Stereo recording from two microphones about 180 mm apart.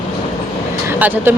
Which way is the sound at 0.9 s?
10° right (ahead or behind).